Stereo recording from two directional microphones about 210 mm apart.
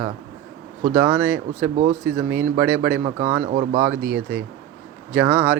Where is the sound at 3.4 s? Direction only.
40° right (ahead or behind).